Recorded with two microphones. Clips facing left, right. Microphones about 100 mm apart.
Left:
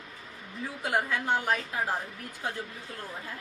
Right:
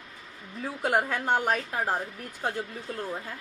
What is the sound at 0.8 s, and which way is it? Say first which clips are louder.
Speech: right 3 dB; 45° right (ahead or behind).